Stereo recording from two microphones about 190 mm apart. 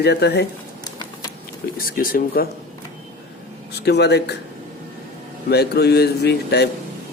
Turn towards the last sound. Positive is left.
turn(degrees=60)  # may be behind; listen again after turning